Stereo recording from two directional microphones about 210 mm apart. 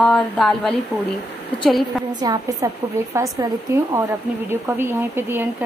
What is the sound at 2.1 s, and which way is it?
Speech, 20° right (ahead or behind).